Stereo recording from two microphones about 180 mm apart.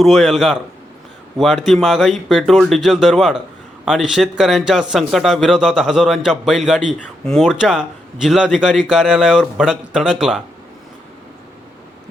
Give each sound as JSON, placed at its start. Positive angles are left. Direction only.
{"t": 0.0, "sound": "speech", "side_deg": 0}